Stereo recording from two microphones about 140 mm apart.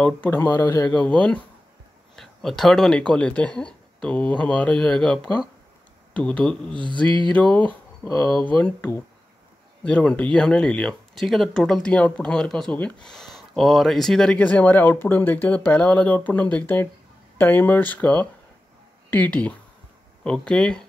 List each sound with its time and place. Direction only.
0.0 s speech: 10° left (ahead or behind)
8.1 s speech: 25° left (ahead or behind)
8.5 s speech: 10° left (ahead or behind)